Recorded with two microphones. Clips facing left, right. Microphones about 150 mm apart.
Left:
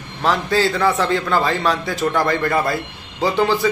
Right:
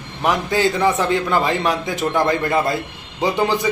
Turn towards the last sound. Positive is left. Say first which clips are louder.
# left 1 dB
turn(degrees=-20)  # may be behind; listen again after turning